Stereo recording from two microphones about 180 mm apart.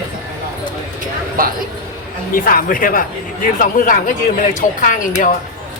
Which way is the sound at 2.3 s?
50° left (ahead or behind).